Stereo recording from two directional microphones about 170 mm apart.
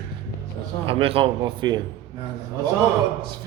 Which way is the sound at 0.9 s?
35° right (ahead or behind).